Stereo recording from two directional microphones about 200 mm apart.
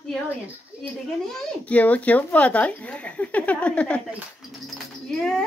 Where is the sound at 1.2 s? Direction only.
5° left (ahead or behind).